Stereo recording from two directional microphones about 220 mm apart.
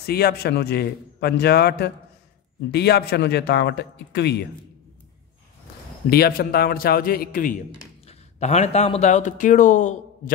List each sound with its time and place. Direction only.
0.0 s a man's voice: 45° left (ahead or behind)
6.0 s a man's voice: 45° left (ahead or behind)